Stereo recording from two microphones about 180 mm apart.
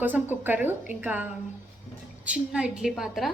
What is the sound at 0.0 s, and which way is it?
A woman's voice, 10° right (ahead or behind).